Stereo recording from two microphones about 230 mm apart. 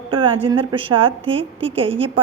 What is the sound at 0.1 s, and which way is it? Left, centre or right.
A woman's voice, right.